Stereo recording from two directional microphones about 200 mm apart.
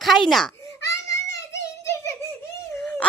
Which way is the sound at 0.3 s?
Centre (ahead or behind).